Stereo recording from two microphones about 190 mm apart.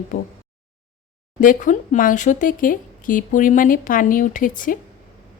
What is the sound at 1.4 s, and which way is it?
Speech, 45° left (ahead or behind).